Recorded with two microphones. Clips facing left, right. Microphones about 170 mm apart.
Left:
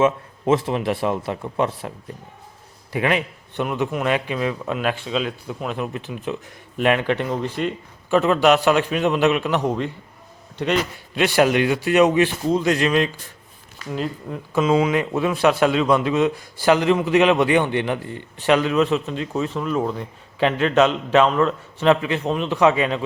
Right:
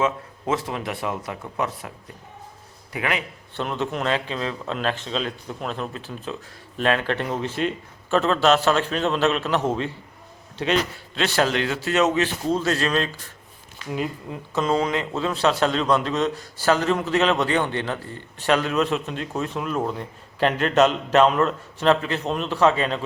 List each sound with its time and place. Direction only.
0.0 s speech: 25° left (ahead or behind)
2.9 s speech: 25° left (ahead or behind)
13.9 s a man's voice: 5° right (ahead or behind)
14.5 s a man's voice: 5° left (ahead or behind)
21.8 s speech: 10° left (ahead or behind)